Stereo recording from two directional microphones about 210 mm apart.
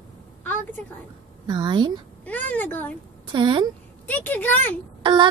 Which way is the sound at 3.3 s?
25° right (ahead or behind).